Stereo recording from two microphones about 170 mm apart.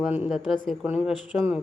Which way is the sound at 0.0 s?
5° right (ahead or behind).